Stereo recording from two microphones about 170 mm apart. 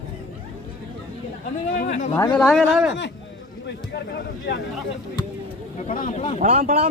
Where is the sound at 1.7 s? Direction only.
60° left (ahead or behind).